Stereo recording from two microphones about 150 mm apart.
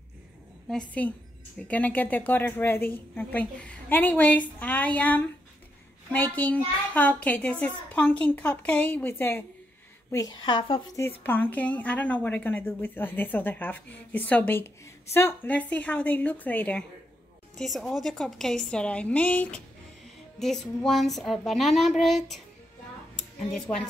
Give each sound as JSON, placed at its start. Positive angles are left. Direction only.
{"t": 0.7, "sound": "a woman's voice", "side_deg": 10}
{"t": 10.4, "sound": "speech", "side_deg": 35}
{"t": 11.0, "sound": "a woman's voice", "side_deg": 15}
{"t": 23.7, "sound": "a woman's voice", "side_deg": 20}